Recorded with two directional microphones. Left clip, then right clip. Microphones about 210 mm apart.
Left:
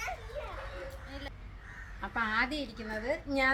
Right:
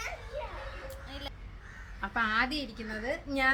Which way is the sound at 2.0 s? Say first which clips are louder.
Right 2 dB; 15° right (ahead or behind).